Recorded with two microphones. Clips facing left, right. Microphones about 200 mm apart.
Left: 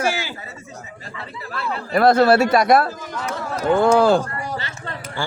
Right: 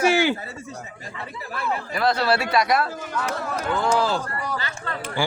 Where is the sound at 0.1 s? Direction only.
60° right (ahead or behind).